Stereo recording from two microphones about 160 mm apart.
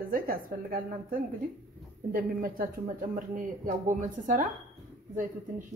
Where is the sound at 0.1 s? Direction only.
65° right (ahead or behind).